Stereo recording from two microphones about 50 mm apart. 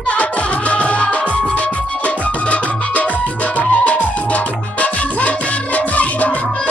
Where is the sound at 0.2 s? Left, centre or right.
Left.